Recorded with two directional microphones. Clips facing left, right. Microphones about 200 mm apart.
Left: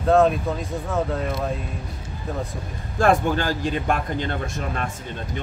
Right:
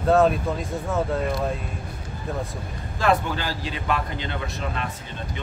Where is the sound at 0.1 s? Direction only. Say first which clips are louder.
Left 1 dB; centre (ahead or behind).